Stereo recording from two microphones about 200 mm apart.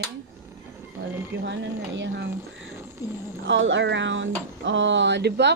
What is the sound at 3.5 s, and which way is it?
Speech, 70° right (ahead or behind).